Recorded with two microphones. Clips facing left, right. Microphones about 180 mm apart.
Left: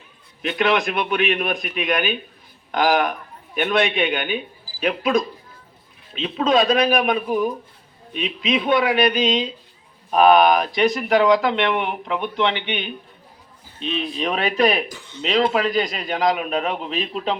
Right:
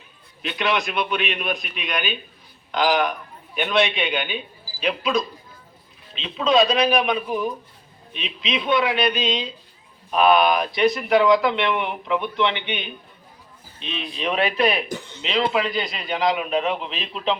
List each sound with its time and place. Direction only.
0.4 s speech: 50° left (ahead or behind)